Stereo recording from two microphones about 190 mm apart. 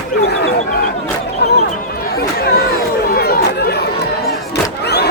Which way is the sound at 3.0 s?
55° left (ahead or behind).